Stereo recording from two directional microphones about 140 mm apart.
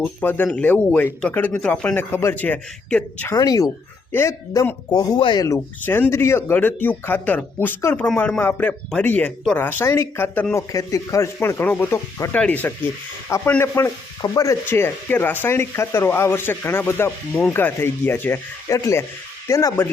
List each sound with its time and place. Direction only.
0.0 s speech: 10° left (ahead or behind)
3.3 s speech: 25° left (ahead or behind)
5.8 s speech: 15° left (ahead or behind)